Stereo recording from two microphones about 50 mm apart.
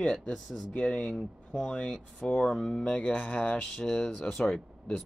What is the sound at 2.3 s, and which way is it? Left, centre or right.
Speech, centre.